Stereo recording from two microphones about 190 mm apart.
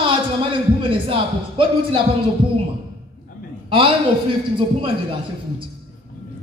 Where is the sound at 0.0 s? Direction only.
30° right (ahead or behind).